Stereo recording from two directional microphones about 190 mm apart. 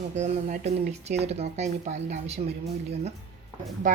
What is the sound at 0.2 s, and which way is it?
Speech, 35° right (ahead or behind).